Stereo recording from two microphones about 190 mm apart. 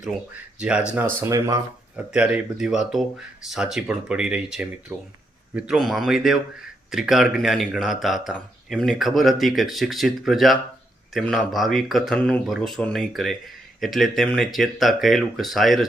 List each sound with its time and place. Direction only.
0.6 s a man's voice: 5° right (ahead or behind)
1.2 s speech: 15° right (ahead or behind)
2.1 s a man's voice: 5° right (ahead or behind)
4.9 s speech: 15° right (ahead or behind)
5.5 s a man's voice: centre (ahead or behind)